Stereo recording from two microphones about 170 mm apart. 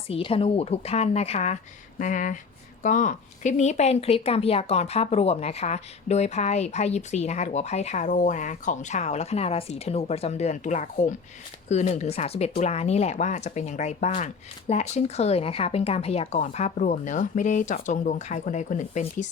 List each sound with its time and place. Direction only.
0.1 s a woman's voice: 35° left (ahead or behind)